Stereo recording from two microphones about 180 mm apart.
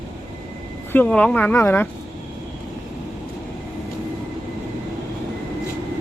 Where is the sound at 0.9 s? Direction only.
5° left (ahead or behind).